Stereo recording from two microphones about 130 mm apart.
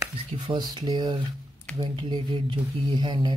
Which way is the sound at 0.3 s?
45° right (ahead or behind).